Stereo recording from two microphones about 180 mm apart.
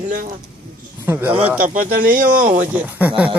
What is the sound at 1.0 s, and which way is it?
Speech, 10° right (ahead or behind).